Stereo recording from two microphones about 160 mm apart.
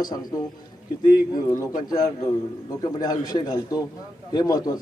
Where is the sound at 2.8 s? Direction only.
25° left (ahead or behind).